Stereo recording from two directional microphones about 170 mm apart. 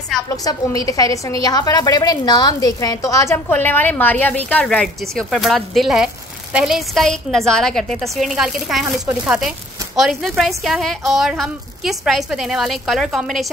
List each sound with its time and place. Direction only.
0.5 s a woman's voice: 20° left (ahead or behind); by 13.5 s centre (ahead or behind)